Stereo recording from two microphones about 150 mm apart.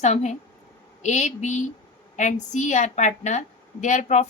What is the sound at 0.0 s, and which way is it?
A woman's voice, 50° left (ahead or behind).